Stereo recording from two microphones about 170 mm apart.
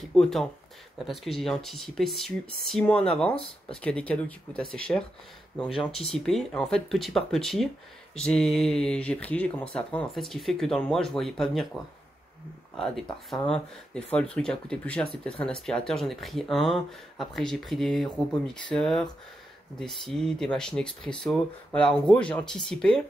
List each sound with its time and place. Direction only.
0.1 s speech: centre (ahead or behind)
3.3 s speech: 35° left (ahead or behind)
3.8 s speech: 5° left (ahead or behind)
12.7 s speech: 5° left (ahead or behind)